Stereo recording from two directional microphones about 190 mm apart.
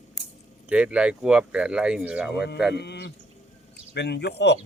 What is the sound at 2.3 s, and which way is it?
Speech, 60° left (ahead or behind).